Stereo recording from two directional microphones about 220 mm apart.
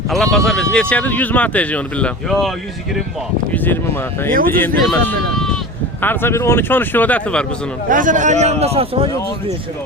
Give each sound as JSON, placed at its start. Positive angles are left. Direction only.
{"t": 0.1, "sound": "speech", "side_deg": 0}
{"t": 3.5, "sound": "a sound", "side_deg": 10}
{"t": 4.3, "sound": "a man's voice", "side_deg": -40}
{"t": 4.6, "sound": "speech", "side_deg": 5}
{"t": 7.9, "sound": "a man's voice", "side_deg": -35}